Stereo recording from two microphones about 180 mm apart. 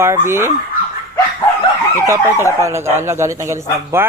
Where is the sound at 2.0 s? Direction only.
15° right (ahead or behind).